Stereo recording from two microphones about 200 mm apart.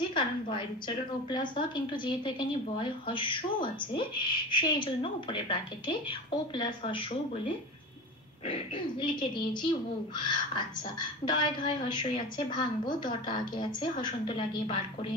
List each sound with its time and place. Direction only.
0.1 s a woman's voice: 25° left (ahead or behind)
8.5 s a woman's voice: 25° left (ahead or behind)